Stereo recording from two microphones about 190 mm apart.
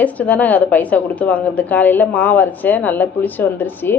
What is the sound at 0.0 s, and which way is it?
A woman's voice, 5° left (ahead or behind).